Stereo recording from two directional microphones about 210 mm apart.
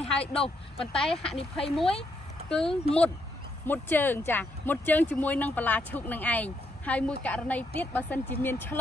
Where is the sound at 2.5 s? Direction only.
Centre (ahead or behind).